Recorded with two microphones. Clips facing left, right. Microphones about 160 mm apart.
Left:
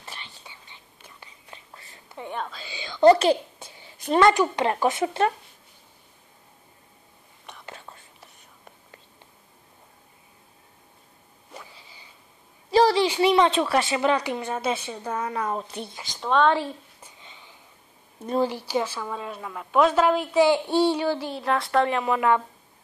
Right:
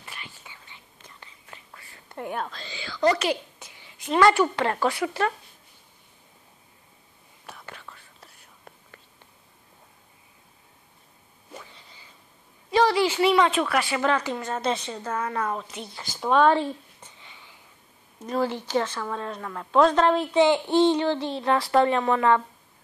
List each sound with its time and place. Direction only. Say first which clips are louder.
0.0 s whispering: left 1 dB; 25° left (ahead or behind)
2.0 s a woman's voice: right 1 dB; 5° right (ahead or behind)
2.6 s speech: left 8 dB; 15° left (ahead or behind)
3.1 s a sound: left 7 dB; 30° left (ahead or behind)
4.2 s speech: even; 15° left (ahead or behind)
7.6 s whispering: left 1 dB; 25° left (ahead or behind)
12.7 s a sound: left 2 dB; 35° left (ahead or behind)
13.0 s a woman's voice: left 1 dB; 20° left (ahead or behind)
15.5 s a woman's voice: left 2 dB; 35° left (ahead or behind)
16.0 s speech: right 1 dB; 5° right (ahead or behind)
16.5 s a sound: right 2 dB; 5° left (ahead or behind)
18.4 s a woman's voice: right 1 dB; 10° left (ahead or behind)